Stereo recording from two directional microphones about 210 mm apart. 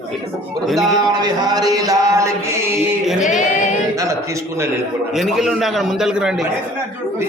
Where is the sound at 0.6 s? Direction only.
Centre (ahead or behind).